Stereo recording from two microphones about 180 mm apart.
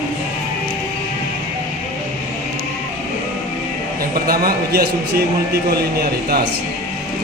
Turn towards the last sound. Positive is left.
turn(degrees=-60)  # may be behind; listen again after turning